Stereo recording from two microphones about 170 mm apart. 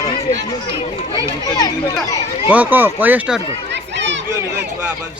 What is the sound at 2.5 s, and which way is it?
Speech, 10° right (ahead or behind).